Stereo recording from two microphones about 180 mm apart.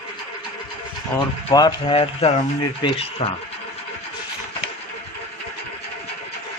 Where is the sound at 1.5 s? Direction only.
25° left (ahead or behind).